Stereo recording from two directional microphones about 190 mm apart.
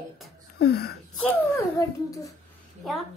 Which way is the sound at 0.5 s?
55° left (ahead or behind).